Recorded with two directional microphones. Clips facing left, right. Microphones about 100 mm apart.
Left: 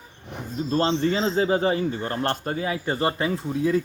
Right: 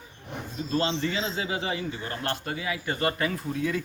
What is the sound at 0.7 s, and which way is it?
A man's voice, 40° left (ahead or behind).